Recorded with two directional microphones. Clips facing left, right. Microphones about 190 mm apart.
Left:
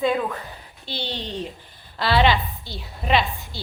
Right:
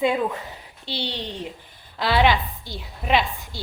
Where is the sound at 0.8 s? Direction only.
70° right (ahead or behind).